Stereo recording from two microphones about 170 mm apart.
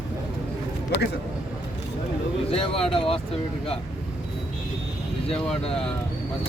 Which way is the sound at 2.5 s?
35° left (ahead or behind).